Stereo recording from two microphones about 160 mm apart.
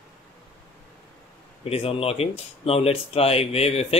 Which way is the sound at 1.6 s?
35° left (ahead or behind).